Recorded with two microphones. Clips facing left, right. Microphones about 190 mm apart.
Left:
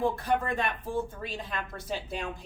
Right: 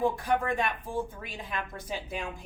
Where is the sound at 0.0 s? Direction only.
15° right (ahead or behind).